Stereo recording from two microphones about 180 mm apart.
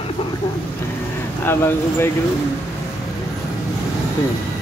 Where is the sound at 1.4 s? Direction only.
15° left (ahead or behind).